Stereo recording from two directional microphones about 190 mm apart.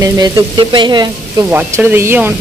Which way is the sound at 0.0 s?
25° right (ahead or behind).